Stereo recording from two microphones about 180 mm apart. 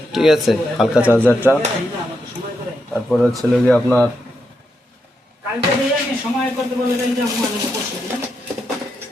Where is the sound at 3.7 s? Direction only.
5° left (ahead or behind).